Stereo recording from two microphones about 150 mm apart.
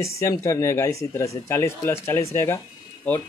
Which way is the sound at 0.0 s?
20° left (ahead or behind).